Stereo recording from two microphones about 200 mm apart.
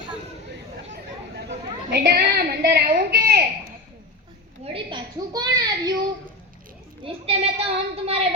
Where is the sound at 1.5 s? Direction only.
55° right (ahead or behind).